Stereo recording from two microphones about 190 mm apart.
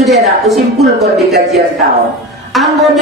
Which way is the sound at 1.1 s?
Centre (ahead or behind).